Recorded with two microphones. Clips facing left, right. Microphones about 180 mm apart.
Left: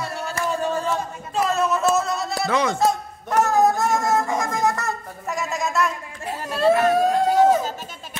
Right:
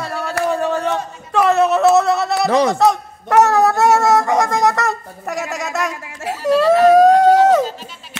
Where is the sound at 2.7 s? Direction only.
80° right.